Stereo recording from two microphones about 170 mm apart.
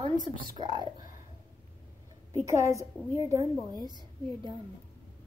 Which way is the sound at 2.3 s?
15° right (ahead or behind).